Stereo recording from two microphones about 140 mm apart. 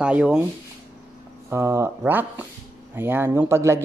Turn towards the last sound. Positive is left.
turn(degrees=-20)  # may be behind; listen again after turning